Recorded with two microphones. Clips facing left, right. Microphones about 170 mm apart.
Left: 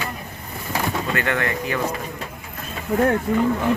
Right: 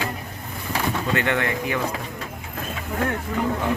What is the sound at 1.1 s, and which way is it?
Speech, 20° right (ahead or behind).